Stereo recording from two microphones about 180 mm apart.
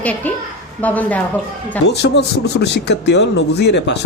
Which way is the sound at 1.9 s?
70° left (ahead or behind).